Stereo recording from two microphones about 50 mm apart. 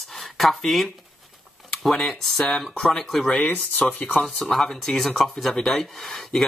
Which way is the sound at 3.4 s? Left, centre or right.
Left.